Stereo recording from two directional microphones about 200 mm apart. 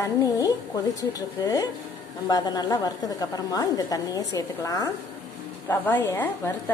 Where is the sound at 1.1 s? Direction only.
15° left (ahead or behind).